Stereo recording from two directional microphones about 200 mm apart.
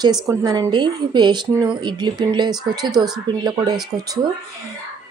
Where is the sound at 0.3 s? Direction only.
15° right (ahead or behind).